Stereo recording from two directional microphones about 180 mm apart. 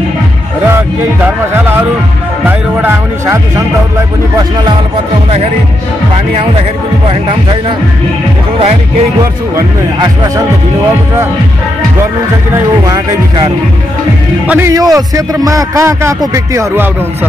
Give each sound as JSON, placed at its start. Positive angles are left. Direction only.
{"t": 0.7, "sound": "a man's voice", "side_deg": -10}
{"t": 9.6, "sound": "speech", "side_deg": -20}
{"t": 14.5, "sound": "a man's voice", "side_deg": -15}